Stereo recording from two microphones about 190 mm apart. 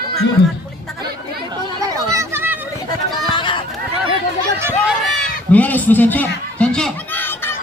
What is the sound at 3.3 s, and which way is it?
Run, 25° left (ahead or behind).